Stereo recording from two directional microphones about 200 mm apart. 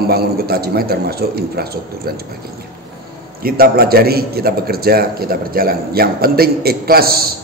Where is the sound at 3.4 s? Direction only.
50° right (ahead or behind).